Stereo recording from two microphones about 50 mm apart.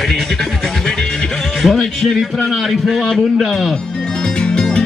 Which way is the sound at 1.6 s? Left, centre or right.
Centre.